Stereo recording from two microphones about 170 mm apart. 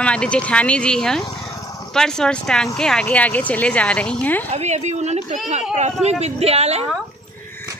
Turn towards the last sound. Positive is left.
turn(degrees=-40)  # may be behind; listen again after turning